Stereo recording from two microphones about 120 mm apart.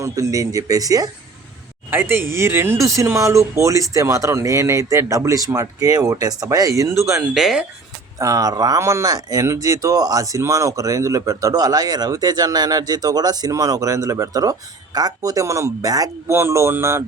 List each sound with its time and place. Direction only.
0.0 s speech: 30° right (ahead or behind)
1.9 s speech: 20° right (ahead or behind)
7.3 s speech: centre (ahead or behind)
8.2 s speech: 30° right (ahead or behind)